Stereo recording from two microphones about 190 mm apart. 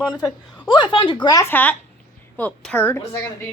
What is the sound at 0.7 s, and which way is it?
Speech, 25° left (ahead or behind).